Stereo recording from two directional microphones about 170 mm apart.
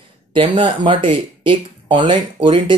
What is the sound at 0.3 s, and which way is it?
Speech, 30° right (ahead or behind).